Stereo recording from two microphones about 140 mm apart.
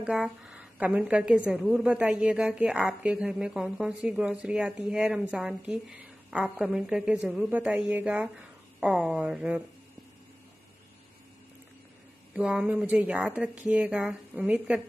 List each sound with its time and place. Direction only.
0.0 s a woman's voice: 5° right (ahead or behind)
12.4 s speech: 10° right (ahead or behind)